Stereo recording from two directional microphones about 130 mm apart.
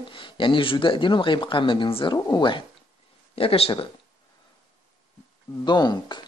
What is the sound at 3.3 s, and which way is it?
Speech, 50° left (ahead or behind).